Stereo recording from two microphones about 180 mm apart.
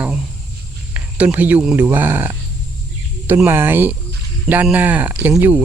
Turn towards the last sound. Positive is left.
turn(degrees=-10)  # may be behind; listen again after turning